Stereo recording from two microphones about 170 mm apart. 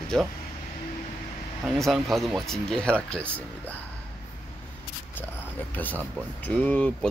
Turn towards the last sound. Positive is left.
turn(degrees=10)  # may be behind; listen again after turning